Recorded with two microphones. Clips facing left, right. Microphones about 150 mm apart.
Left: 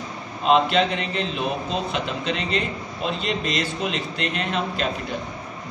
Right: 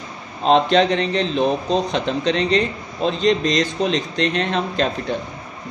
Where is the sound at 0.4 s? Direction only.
35° right (ahead or behind).